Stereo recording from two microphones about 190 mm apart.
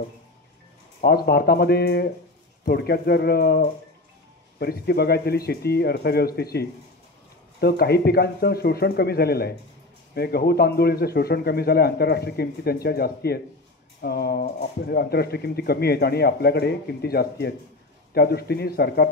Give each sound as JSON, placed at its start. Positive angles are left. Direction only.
{"t": 1.0, "sound": "speech", "side_deg": 55}